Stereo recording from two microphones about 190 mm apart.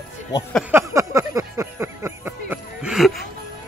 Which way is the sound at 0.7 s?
15° right (ahead or behind).